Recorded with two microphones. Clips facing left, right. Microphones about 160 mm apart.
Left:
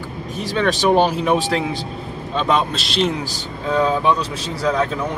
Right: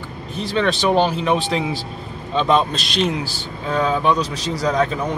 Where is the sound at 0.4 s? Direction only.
10° left (ahead or behind).